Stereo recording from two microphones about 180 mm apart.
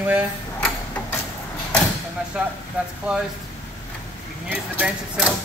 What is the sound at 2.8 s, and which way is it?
Speech, 10° right (ahead or behind).